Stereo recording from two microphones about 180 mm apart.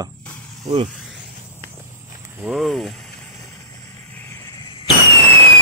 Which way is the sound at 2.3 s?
Centre (ahead or behind).